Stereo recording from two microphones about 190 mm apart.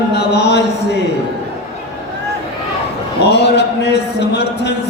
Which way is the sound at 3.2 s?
60° left (ahead or behind).